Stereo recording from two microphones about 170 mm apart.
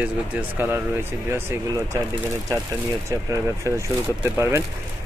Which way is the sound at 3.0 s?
20° right (ahead or behind).